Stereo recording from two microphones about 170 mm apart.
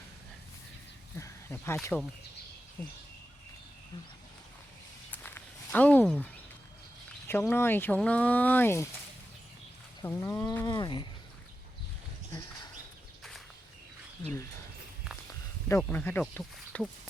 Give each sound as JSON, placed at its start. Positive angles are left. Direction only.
{"t": 1.2, "sound": "speech", "side_deg": 15}
{"t": 5.1, "sound": "a sound", "side_deg": 10}
{"t": 7.3, "sound": "speech", "side_deg": 15}
{"t": 10.0, "sound": "speech", "side_deg": 15}
{"t": 15.7, "sound": "speech", "side_deg": 10}